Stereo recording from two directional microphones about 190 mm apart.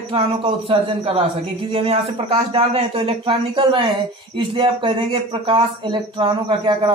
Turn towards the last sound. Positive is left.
turn(degrees=-25)  # may be behind; listen again after turning